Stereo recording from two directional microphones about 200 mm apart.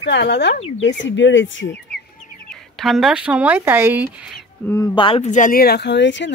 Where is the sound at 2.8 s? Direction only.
Centre (ahead or behind).